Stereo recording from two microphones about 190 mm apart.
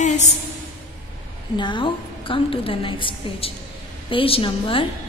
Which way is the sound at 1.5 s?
25° left (ahead or behind).